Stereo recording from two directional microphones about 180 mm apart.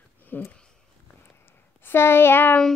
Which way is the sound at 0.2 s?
10° left (ahead or behind).